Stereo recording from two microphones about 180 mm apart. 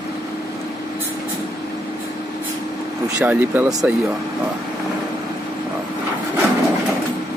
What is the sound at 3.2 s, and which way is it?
Speech, 10° right (ahead or behind).